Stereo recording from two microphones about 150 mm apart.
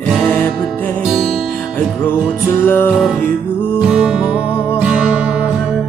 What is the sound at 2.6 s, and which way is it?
Music, 15° left (ahead or behind).